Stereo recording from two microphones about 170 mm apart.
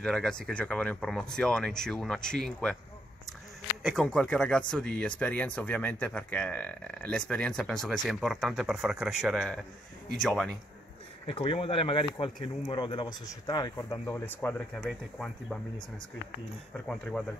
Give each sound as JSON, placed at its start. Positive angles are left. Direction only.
{"t": 0.0, "sound": "speech", "side_deg": 5}
{"t": 3.8, "sound": "speech", "side_deg": 5}
{"t": 11.2, "sound": "speech", "side_deg": 30}
{"t": 14.9, "sound": "speech", "side_deg": 0}
{"t": 16.7, "sound": "speech", "side_deg": 5}